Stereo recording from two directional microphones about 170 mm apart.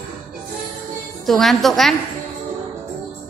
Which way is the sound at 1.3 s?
Centre (ahead or behind).